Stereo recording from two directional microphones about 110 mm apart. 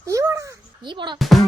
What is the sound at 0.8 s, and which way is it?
Speech, 45° right (ahead or behind).